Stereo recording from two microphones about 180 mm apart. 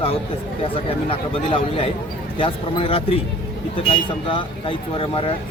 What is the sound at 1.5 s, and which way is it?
A man's voice, 30° left (ahead or behind).